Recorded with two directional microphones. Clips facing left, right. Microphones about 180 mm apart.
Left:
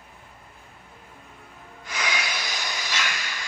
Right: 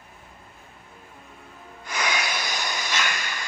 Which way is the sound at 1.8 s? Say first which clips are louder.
Right 2 dB; 50° right (ahead or behind).